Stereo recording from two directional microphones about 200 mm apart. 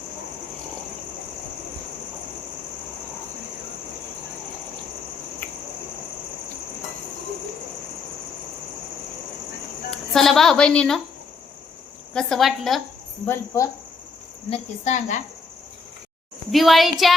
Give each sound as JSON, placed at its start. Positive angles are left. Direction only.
{"t": 9.9, "sound": "speech", "side_deg": 0}
{"t": 12.1, "sound": "a child's voice", "side_deg": 0}
{"t": 13.2, "sound": "speech", "side_deg": 15}
{"t": 14.5, "sound": "a woman's voice", "side_deg": 35}
{"t": 16.5, "sound": "a child's voice", "side_deg": 0}